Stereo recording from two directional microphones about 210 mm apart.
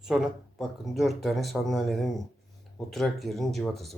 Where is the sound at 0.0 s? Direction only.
Centre (ahead or behind).